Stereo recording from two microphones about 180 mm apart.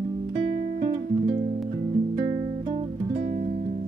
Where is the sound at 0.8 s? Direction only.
35° right (ahead or behind).